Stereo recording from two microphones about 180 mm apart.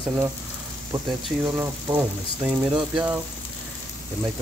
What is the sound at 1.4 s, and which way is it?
Speech, 10° right (ahead or behind).